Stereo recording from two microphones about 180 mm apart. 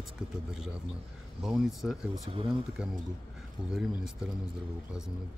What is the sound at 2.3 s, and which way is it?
Speech, 30° right (ahead or behind).